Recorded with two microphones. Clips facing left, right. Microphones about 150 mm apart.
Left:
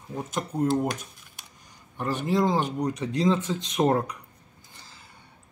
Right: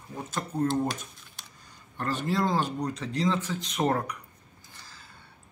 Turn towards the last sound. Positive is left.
turn(degrees=20)  # may be behind; listen again after turning